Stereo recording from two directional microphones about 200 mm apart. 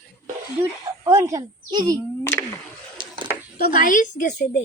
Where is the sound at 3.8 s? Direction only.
40° left (ahead or behind).